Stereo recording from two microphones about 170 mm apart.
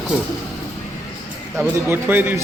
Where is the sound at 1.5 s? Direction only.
15° right (ahead or behind).